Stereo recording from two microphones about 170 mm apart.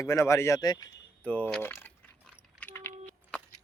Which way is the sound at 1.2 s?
10° left (ahead or behind).